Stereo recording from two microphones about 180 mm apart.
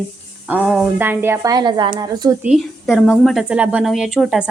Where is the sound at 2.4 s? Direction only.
5° right (ahead or behind).